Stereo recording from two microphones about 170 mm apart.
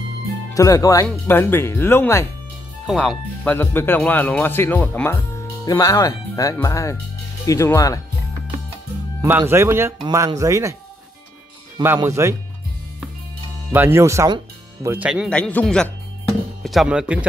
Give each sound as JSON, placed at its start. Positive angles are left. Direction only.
{"t": 0.6, "sound": "speech", "side_deg": 20}
{"t": 2.9, "sound": "speech", "side_deg": 5}
{"t": 9.2, "sound": "speech", "side_deg": -15}
{"t": 11.8, "sound": "speech", "side_deg": -15}
{"t": 13.7, "sound": "speech", "side_deg": -15}
{"t": 15.2, "sound": "a man's voice", "side_deg": 5}